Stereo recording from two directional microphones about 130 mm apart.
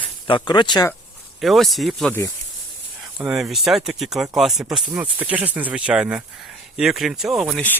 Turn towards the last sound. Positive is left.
turn(degrees=-5)  # may be behind; listen again after turning